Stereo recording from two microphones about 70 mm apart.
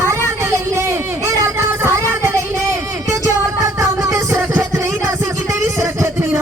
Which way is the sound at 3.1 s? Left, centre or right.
Right.